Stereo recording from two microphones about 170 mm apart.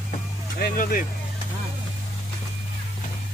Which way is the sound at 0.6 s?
55° left (ahead or behind).